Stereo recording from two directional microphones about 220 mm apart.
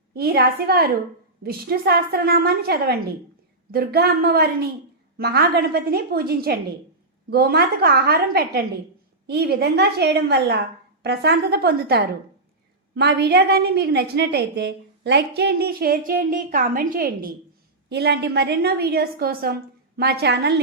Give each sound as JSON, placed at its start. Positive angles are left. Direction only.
{"t": 0.1, "sound": "a woman's voice", "side_deg": -45}